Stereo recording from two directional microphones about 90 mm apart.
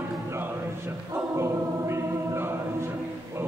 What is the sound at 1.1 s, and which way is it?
Choir, 30° right (ahead or behind).